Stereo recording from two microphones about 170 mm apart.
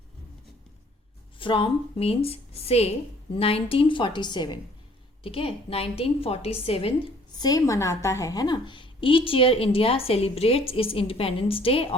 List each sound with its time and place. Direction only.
1.4 s a woman's voice: 30° left (ahead or behind)